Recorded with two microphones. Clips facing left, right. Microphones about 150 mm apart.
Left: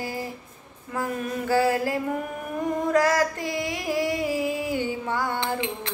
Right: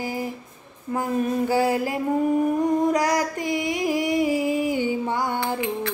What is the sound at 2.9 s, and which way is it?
Music, 15° right (ahead or behind).